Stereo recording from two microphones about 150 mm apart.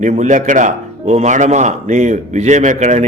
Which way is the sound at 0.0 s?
55° right (ahead or behind).